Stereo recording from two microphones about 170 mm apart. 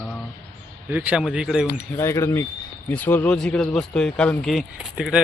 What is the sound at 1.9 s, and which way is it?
A man's voice, 15° left (ahead or behind).